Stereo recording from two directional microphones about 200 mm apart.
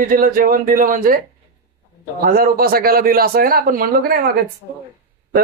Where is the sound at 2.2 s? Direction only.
50° right (ahead or behind).